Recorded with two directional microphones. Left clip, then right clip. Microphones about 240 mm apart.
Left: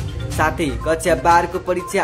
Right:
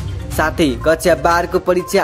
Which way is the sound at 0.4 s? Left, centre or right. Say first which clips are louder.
Right 4 dB; right.